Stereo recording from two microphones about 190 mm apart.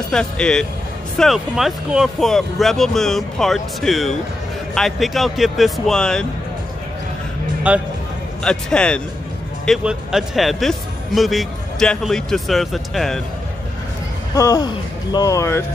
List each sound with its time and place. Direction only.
0.1 s speech: 5° left (ahead or behind)
7.7 s speech: 5° right (ahead or behind)
8.5 s speech: 5° left (ahead or behind)
14.3 s speech: 15° left (ahead or behind)